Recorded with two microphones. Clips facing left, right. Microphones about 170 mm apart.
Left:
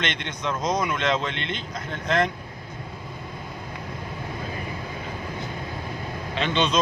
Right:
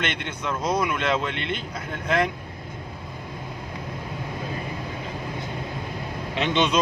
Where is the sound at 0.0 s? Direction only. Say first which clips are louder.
Even; 10° right (ahead or behind).